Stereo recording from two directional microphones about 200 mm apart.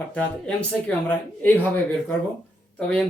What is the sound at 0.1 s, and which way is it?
Speech, 5° left (ahead or behind).